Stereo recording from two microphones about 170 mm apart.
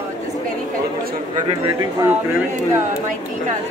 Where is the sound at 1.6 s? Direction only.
15° right (ahead or behind).